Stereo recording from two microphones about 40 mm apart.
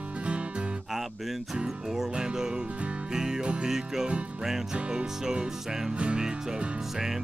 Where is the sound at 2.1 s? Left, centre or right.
Centre.